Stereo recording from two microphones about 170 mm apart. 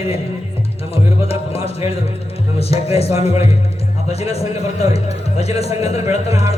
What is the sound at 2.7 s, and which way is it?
Speech, 35° left (ahead or behind).